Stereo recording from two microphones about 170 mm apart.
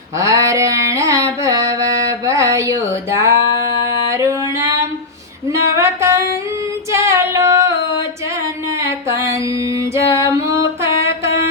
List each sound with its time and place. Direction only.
0.2 s carnatic music: 20° right (ahead or behind)
3.2 s a sound: 15° right (ahead or behind)
4.1 s singing: 15° right (ahead or behind)
5.7 s music: 15° right (ahead or behind)
6.9 s female singing: 15° right (ahead or behind)
9.0 s music: 15° right (ahead or behind)
9.9 s female singing: 15° right (ahead or behind)